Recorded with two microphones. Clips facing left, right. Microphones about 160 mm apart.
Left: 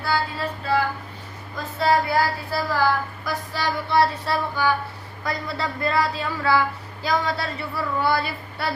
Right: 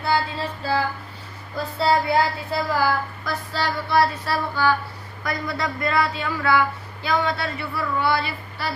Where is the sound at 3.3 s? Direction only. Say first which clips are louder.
Even; 15° left (ahead or behind).